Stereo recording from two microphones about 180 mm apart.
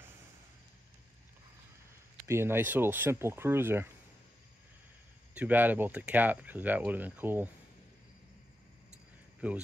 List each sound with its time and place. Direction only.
2.2 s speech: 15° right (ahead or behind)
5.3 s speech: 10° right (ahead or behind)
9.4 s speech: 5° right (ahead or behind)